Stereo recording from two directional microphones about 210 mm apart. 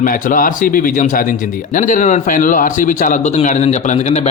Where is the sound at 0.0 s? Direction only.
40° left (ahead or behind).